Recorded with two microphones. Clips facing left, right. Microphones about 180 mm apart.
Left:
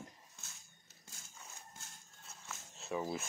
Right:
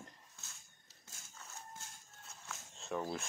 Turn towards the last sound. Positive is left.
turn(degrees=5)  # may be behind; listen again after turning